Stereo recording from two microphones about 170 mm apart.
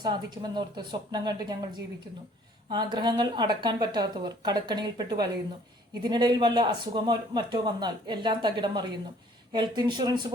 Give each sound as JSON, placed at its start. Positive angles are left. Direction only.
{"t": 0.0, "sound": "a man's voice", "side_deg": -25}
{"t": 2.6, "sound": "a man's voice", "side_deg": -25}